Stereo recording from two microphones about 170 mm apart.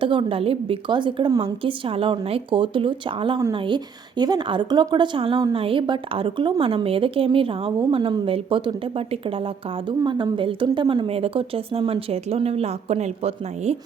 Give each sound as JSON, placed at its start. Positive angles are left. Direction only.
{"t": 0.0, "sound": "a woman's voice", "side_deg": -30}